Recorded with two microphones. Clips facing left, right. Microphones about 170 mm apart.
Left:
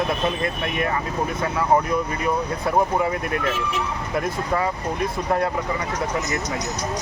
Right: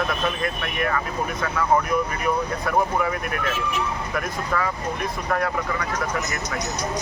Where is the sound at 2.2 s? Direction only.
25° left (ahead or behind).